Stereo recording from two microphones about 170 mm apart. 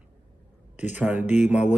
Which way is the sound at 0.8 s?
10° right (ahead or behind).